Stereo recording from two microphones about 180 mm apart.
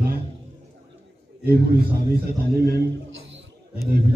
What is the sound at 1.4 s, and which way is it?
A man's voice, 60° right (ahead or behind).